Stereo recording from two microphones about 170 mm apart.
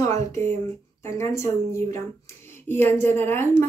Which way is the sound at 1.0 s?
15° left (ahead or behind).